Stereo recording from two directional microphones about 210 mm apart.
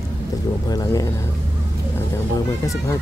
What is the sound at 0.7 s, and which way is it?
Speech, 20° left (ahead or behind).